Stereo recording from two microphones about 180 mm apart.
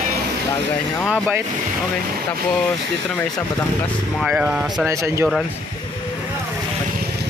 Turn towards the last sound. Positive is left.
turn(degrees=-15)  # may be behind; listen again after turning